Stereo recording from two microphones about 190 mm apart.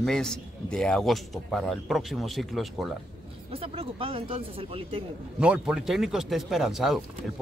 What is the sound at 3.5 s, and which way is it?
Speech, 30° right (ahead or behind).